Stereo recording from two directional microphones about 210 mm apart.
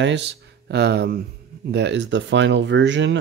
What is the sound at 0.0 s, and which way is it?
Speech, 55° right (ahead or behind).